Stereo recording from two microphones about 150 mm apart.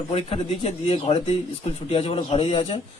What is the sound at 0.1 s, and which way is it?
Speech, 40° left (ahead or behind).